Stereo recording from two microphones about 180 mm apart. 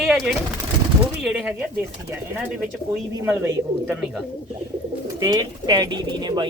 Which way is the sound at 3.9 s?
5° right (ahead or behind).